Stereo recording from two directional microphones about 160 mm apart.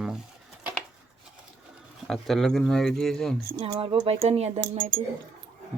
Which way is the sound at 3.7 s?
30° right (ahead or behind).